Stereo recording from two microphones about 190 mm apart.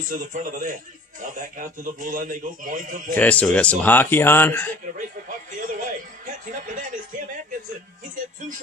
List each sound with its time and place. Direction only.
0.0 s a man's voice: 45° right (ahead or behind)
3.2 s speech: 5° left (ahead or behind)
5.5 s speech: 45° right (ahead or behind)